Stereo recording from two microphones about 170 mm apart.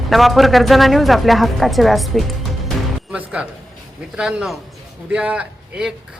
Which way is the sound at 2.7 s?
5° right (ahead or behind).